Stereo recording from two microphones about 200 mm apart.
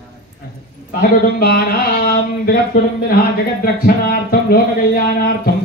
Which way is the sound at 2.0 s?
50° left (ahead or behind).